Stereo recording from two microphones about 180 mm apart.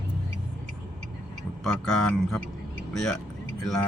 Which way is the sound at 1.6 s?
5° left (ahead or behind).